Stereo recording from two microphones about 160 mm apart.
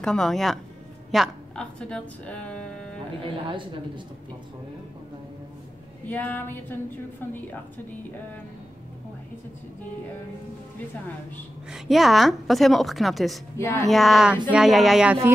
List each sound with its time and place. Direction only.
0.0 s a woman's voice: 5° left (ahead or behind)
6.0 s a woman's voice: 10° left (ahead or behind)
11.7 s a woman's voice: centre (ahead or behind)
13.6 s a woman's voice: 15° left (ahead or behind)
13.8 s a woman's voice: centre (ahead or behind)